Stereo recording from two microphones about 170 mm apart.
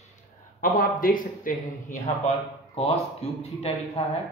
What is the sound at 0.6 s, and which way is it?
Speech, 55° left (ahead or behind).